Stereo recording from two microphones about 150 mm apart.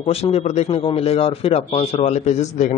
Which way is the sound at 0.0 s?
40° left (ahead or behind).